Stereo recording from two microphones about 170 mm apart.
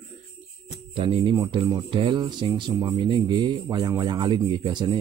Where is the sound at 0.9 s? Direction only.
30° right (ahead or behind).